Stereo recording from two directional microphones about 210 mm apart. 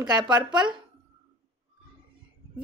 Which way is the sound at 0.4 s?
20° right (ahead or behind).